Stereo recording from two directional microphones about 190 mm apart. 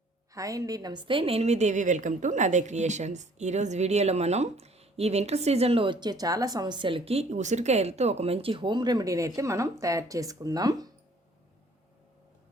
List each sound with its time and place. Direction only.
0.3 s a woman's voice: 20° right (ahead or behind)